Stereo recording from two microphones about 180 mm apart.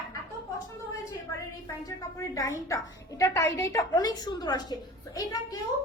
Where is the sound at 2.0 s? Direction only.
20° left (ahead or behind).